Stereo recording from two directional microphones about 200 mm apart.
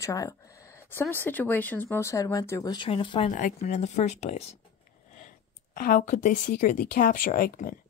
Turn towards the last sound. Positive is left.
turn(degrees=45)  # may be behind; listen again after turning